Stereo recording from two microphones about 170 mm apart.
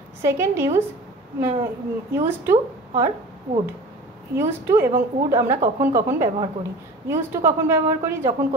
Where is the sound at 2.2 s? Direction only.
10° right (ahead or behind).